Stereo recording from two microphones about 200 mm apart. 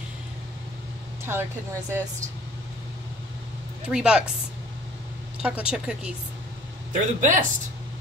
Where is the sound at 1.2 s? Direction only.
10° right (ahead or behind).